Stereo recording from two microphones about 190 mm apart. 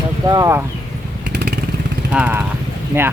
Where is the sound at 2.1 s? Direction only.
10° right (ahead or behind).